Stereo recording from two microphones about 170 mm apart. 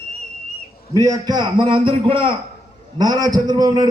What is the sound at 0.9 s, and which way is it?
A man's voice, 20° right (ahead or behind).